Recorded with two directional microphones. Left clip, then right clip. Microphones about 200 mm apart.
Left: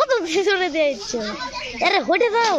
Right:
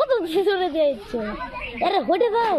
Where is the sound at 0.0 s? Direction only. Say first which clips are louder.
Left 1 dB; 10° left (ahead or behind).